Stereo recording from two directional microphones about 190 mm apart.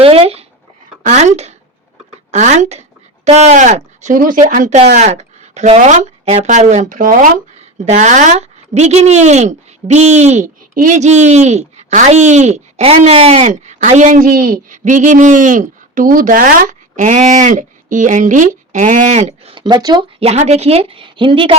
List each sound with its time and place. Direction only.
0.0 s speech: 30° right (ahead or behind)
19.5 s speech: 25° right (ahead or behind)